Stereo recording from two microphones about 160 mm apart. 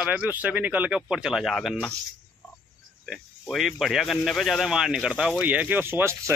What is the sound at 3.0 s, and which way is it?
A man's voice, centre (ahead or behind).